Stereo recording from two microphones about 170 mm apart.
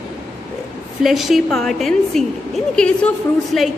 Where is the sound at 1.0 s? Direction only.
Centre (ahead or behind).